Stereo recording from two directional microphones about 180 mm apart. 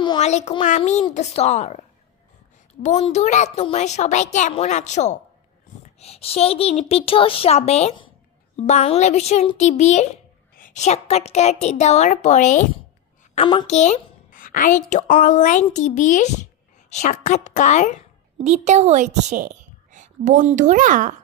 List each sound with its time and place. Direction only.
0.2 s a woman's voice: 40° left (ahead or behind)
2.8 s a woman's voice: 35° left (ahead or behind)
13.7 s a woman's voice: 40° left (ahead or behind)
18.4 s a woman's voice: 40° right (ahead or behind)